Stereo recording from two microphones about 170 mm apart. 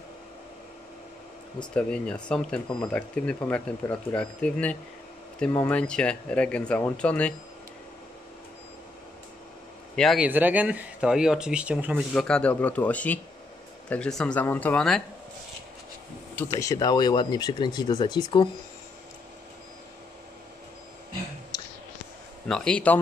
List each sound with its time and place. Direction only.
1.6 s speech: 5° left (ahead or behind)
9.9 s speech: centre (ahead or behind)
12.1 s speech: 5° left (ahead or behind)
16.5 s speech: 20° left (ahead or behind)
22.5 s speech: 5° left (ahead or behind)